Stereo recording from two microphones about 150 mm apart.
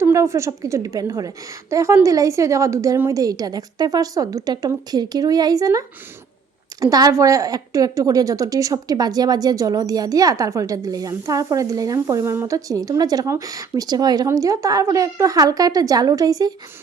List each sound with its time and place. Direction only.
0.0 s a woman's voice: 20° right (ahead or behind)